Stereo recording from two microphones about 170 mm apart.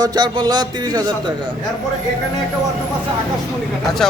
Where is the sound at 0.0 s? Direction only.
25° right (ahead or behind).